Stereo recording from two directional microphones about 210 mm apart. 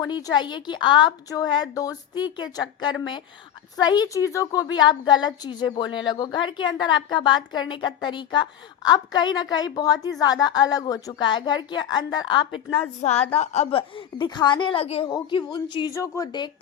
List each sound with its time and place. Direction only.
0.0 s a woman's voice: 20° left (ahead or behind)